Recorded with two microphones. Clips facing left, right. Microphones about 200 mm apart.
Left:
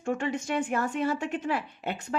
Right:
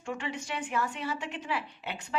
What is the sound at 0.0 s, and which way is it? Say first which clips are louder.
A woman's voice: left 7 dB; 45° left (ahead or behind).